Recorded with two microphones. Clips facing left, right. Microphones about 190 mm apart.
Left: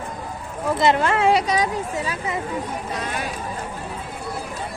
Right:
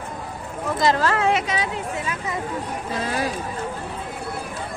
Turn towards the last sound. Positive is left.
turn(degrees=-30)  # may be behind; listen again after turning